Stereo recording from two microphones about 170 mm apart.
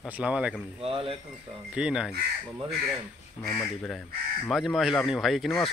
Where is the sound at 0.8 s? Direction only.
35° right (ahead or behind).